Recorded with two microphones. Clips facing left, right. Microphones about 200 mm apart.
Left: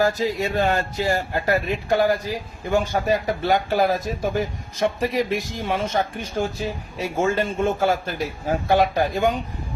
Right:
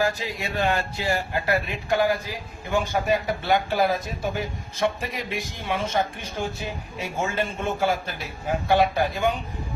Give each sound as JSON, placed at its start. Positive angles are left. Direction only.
{"t": 0.0, "sound": "speech", "side_deg": 40}